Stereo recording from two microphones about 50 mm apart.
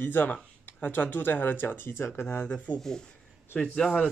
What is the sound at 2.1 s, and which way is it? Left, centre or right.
Speech, left.